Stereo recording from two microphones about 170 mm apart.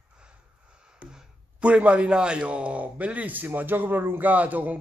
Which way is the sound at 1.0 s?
5° right (ahead or behind).